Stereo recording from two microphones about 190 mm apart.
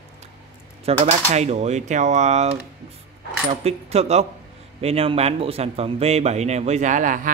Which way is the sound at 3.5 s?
35° right (ahead or behind).